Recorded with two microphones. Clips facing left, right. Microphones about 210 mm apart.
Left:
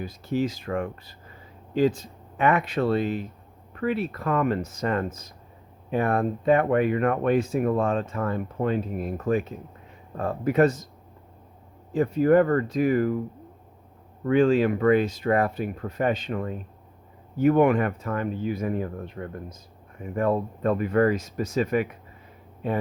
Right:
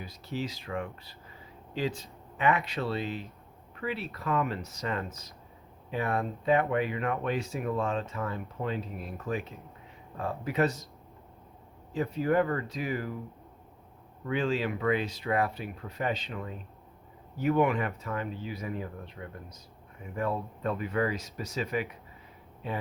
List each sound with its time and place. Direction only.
0.0 s speech: 50° left (ahead or behind)
11.9 s speech: 50° left (ahead or behind)
14.3 s speech: 50° left (ahead or behind)